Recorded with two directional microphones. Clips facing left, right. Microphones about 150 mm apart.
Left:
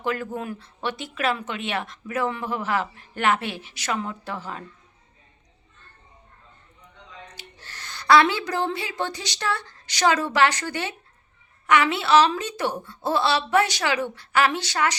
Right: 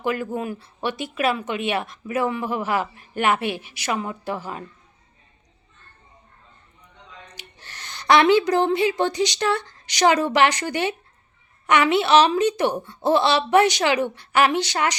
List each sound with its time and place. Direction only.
0.0 s speech: 10° right (ahead or behind)
7.3 s a woman's voice: 20° right (ahead or behind)